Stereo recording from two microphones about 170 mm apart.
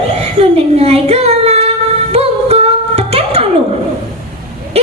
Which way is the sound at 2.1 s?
35° right (ahead or behind).